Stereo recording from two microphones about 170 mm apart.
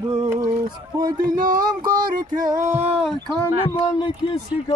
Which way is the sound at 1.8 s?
55° right (ahead or behind).